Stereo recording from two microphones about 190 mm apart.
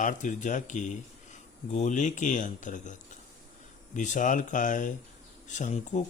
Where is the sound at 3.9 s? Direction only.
40° left (ahead or behind).